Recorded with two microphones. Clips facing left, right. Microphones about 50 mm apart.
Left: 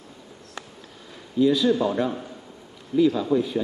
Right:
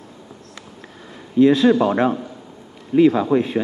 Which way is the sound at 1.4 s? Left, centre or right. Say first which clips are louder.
Right 6 dB; right.